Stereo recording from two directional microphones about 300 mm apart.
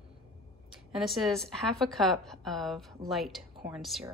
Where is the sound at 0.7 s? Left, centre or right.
Centre.